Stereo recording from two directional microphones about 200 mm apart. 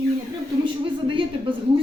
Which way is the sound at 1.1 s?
25° right (ahead or behind).